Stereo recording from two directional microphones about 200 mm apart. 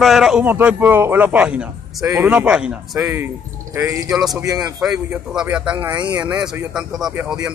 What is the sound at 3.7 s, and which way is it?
Speech, 15° right (ahead or behind).